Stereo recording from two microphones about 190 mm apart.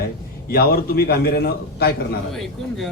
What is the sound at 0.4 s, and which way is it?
A man's voice, 55° left (ahead or behind).